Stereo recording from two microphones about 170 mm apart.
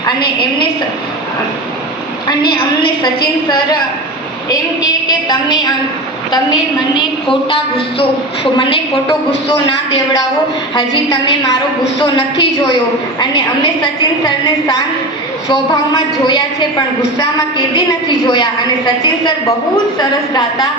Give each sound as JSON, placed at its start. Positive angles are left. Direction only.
{"t": 0.0, "sound": "a woman's voice", "side_deg": 25}
{"t": 2.2, "sound": "a woman's voice", "side_deg": 25}
{"t": 4.4, "sound": "a woman's voice", "side_deg": 25}
{"t": 9.5, "sound": "a woman's voice", "side_deg": 25}
{"t": 20.0, "sound": "a woman's voice", "side_deg": 25}